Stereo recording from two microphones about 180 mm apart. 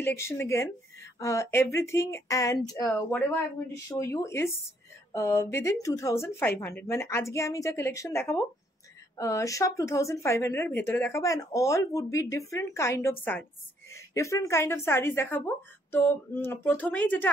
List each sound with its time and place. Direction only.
0.0 s a woman's voice: 15° left (ahead or behind)
2.9 s a woman's voice: 10° left (ahead or behind)